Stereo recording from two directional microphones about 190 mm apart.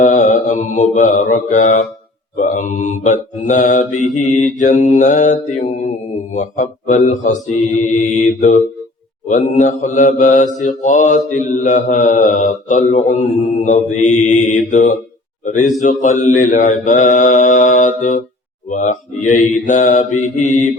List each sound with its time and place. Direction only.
0.0 s mantra: 40° left (ahead or behind)